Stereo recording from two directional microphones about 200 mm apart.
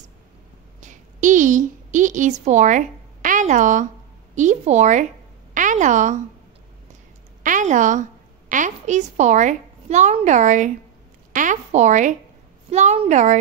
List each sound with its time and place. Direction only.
0.7 s a sound: 40° right (ahead or behind)
4.4 s a woman's voice: 35° right (ahead or behind)
7.4 s a woman's voice: 40° right (ahead or behind)